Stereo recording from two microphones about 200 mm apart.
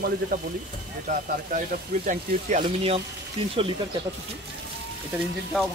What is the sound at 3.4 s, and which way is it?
Speech, 25° right (ahead or behind).